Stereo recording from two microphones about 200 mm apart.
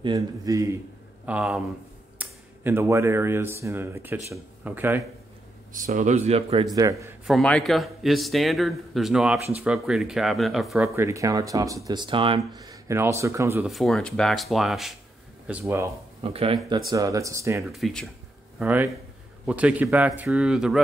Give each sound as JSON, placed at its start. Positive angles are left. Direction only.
{"t": 0.0, "sound": "speech", "side_deg": -20}
{"t": 1.2, "sound": "speech", "side_deg": -5}
{"t": 5.7, "sound": "speech", "side_deg": -40}
{"t": 6.7, "sound": "speech", "side_deg": -15}
{"t": 7.2, "sound": "a man's voice", "side_deg": 0}
{"t": 11.0, "sound": "speech", "side_deg": -15}
{"t": 13.7, "sound": "a man's voice", "side_deg": 0}
{"t": 16.2, "sound": "speech", "side_deg": -30}
{"t": 16.9, "sound": "speech", "side_deg": -15}
{"t": 17.6, "sound": "a man's voice", "side_deg": 0}